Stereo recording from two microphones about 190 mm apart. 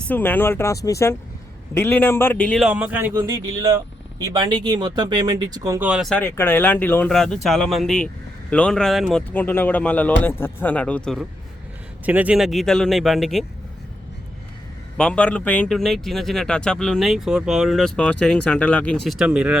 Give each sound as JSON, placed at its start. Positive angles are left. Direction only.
{"t": 0.0, "sound": "speech", "side_deg": 10}
{"t": 2.6, "sound": "a man's voice", "side_deg": -5}
{"t": 5.8, "sound": "a man's voice", "side_deg": -5}
{"t": 9.3, "sound": "speech", "side_deg": 10}
{"t": 12.0, "sound": "a man's voice", "side_deg": -10}
{"t": 14.9, "sound": "a man's voice", "side_deg": 5}